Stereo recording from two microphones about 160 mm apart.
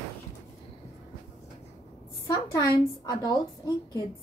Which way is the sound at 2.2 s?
20° left (ahead or behind).